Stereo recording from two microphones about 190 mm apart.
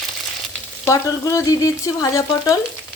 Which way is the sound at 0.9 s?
15° left (ahead or behind).